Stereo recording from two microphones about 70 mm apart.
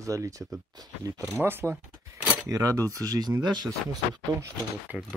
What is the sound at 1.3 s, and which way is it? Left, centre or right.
Speech, right.